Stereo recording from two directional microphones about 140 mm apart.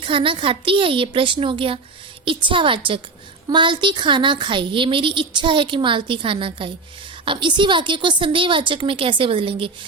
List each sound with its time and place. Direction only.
0.0 s a woman's voice: 40° right (ahead or behind)